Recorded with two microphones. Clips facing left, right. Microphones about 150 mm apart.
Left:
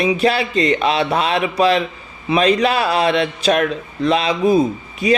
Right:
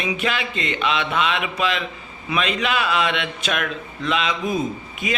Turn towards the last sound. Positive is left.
turn(degrees=35)  # may be behind; listen again after turning